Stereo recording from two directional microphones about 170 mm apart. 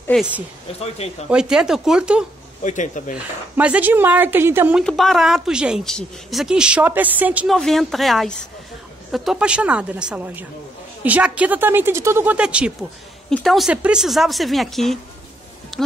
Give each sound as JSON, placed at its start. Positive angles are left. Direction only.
{"t": 0.1, "sound": "speech", "side_deg": 5}
{"t": 0.7, "sound": "speech", "side_deg": 35}
{"t": 1.3, "sound": "speech", "side_deg": -5}
{"t": 2.6, "sound": "speech", "side_deg": 45}
{"t": 3.5, "sound": "a woman's voice", "side_deg": -10}
{"t": 4.7, "sound": "a woman's voice", "side_deg": 0}